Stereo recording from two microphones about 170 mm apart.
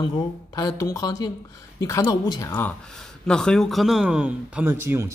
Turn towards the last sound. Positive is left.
turn(degrees=-15)  # may be behind; listen again after turning